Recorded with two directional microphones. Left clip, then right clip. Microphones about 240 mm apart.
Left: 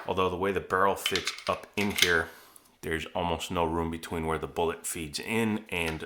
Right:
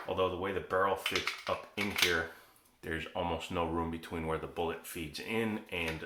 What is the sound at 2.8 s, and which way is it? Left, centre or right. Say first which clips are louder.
Speech: left 5 dB; left.